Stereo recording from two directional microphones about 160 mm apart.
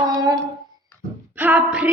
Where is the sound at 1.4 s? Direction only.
10° right (ahead or behind).